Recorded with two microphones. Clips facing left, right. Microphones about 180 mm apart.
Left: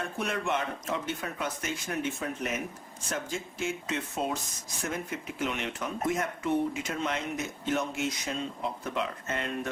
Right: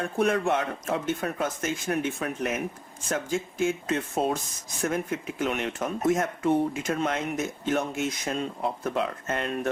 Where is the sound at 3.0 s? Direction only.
50° right (ahead or behind).